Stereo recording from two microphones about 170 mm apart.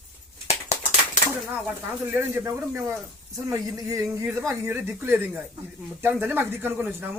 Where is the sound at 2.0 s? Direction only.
15° right (ahead or behind).